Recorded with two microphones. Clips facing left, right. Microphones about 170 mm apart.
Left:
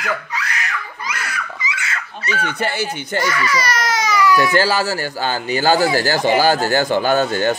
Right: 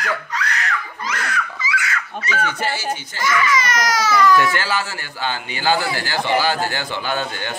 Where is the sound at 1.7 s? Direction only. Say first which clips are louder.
Right 3 dB; 25° left (ahead or behind).